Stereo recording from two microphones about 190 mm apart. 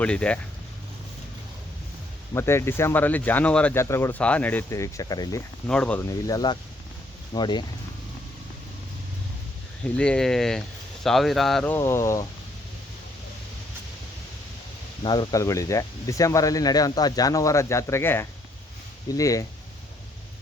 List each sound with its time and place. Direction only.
0.0 s speech: 5° left (ahead or behind)
2.3 s speech: 15° left (ahead or behind)
5.6 s speech: 5° left (ahead or behind)
6.1 s speech: 20° left (ahead or behind)
9.9 s speech: 5° left (ahead or behind)
15.0 s speech: 20° left (ahead or behind)